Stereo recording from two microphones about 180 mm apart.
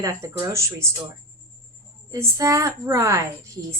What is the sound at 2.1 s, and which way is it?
A woman's voice, 15° right (ahead or behind).